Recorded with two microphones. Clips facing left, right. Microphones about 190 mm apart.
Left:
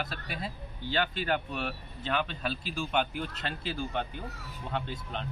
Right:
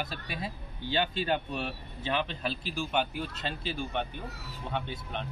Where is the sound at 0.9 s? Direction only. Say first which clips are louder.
Right 1 dB; 20° right (ahead or behind).